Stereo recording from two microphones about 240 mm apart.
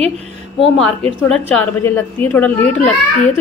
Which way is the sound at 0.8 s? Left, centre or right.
Centre.